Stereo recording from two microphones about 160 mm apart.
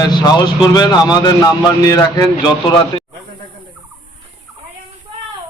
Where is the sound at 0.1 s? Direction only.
25° left (ahead or behind).